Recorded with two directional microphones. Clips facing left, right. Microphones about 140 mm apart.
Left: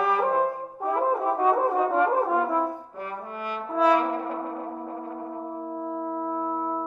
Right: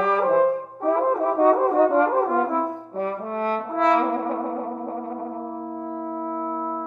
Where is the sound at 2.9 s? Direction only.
35° right (ahead or behind).